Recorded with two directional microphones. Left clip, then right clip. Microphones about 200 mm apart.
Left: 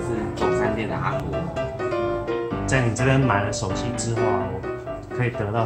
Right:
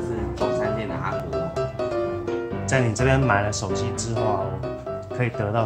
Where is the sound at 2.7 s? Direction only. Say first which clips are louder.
Right 1 dB; 50° right (ahead or behind).